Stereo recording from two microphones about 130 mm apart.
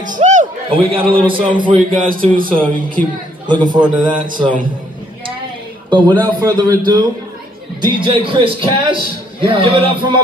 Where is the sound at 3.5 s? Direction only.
35° right (ahead or behind).